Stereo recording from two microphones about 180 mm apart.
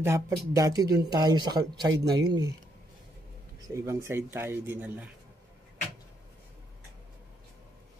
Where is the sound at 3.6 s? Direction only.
15° right (ahead or behind).